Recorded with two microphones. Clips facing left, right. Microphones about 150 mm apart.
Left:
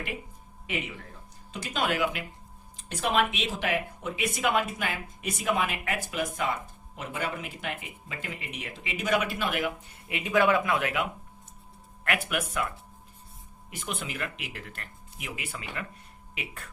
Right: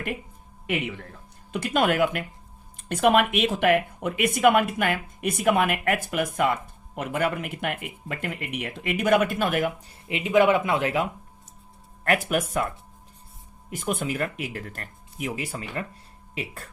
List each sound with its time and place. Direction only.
1.5 s speech: 55° right (ahead or behind)
10.1 s speech: 20° right (ahead or behind); by 12.6 s 40° right (ahead or behind)
13.7 s speech: 45° right (ahead or behind)